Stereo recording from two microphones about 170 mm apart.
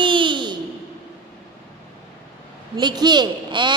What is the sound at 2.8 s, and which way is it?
Speech, 25° right (ahead or behind).